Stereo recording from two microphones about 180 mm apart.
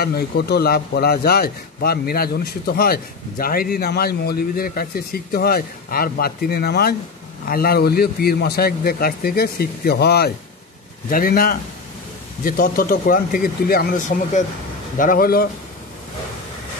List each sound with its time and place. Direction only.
0.0 s a man's voice: 65° left (ahead or behind)